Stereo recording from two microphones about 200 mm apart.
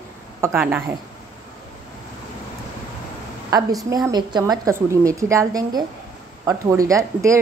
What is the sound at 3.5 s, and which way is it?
A woman's voice, 15° right (ahead or behind).